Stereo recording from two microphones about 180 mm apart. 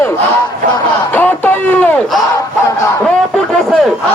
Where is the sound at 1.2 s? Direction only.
10° left (ahead or behind).